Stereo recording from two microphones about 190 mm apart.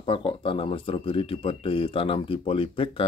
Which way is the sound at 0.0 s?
25° left (ahead or behind).